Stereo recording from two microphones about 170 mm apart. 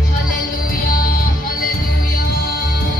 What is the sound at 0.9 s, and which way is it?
Music, 55° left (ahead or behind).